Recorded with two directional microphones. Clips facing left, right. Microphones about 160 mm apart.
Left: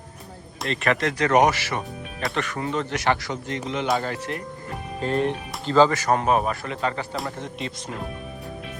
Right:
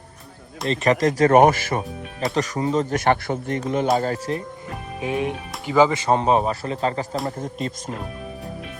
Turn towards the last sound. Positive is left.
turn(degrees=-45)  # may be behind; listen again after turning